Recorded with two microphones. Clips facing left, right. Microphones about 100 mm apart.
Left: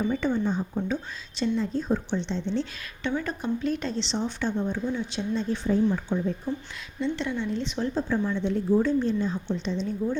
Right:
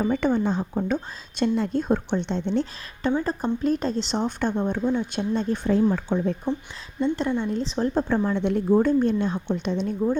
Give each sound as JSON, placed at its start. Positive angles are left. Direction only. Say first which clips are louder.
{"t": 0.0, "sound": "a woman's voice", "louder": "right 3 dB", "side_deg": -65}
{"t": 1.4, "sound": "a woman's voice", "louder": "right 3 dB", "side_deg": -65}
{"t": 3.1, "sound": "speech", "louder": "right 5 dB", "side_deg": -25}
{"t": 3.4, "sound": "a woman's voice", "louder": "right 4 dB", "side_deg": -40}
{"t": 5.9, "sound": "a woman's voice", "louder": "right 3 dB", "side_deg": -65}
{"t": 7.0, "sound": "a woman's voice", "louder": "right 4 dB", "side_deg": -45}
{"t": 7.6, "sound": "a woman's voice", "louder": "right 4 dB", "side_deg": -35}
{"t": 7.9, "sound": "a woman's voice", "louder": "right 3 dB", "side_deg": -55}